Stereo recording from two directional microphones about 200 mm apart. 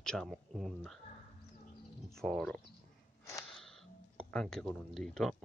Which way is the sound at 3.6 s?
Centre (ahead or behind).